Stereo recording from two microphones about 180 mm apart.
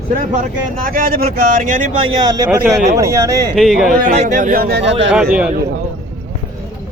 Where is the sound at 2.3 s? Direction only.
15° right (ahead or behind).